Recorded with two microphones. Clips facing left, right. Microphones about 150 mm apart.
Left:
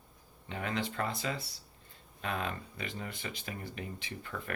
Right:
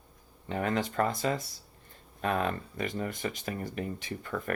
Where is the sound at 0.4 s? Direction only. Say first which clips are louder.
Right 6 dB; 45° right (ahead or behind).